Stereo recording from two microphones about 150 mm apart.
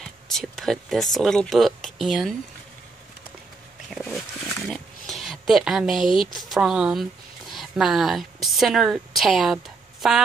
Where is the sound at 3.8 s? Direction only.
Centre (ahead or behind).